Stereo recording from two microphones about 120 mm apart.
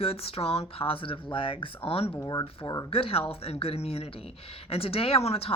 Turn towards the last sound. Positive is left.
turn(degrees=55)  # may be behind; listen again after turning